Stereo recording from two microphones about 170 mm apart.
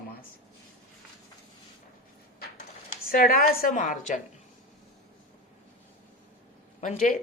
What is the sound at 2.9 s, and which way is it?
A woman's voice, 55° left (ahead or behind).